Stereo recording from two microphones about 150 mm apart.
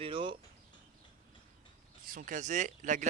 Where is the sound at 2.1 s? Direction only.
60° right (ahead or behind).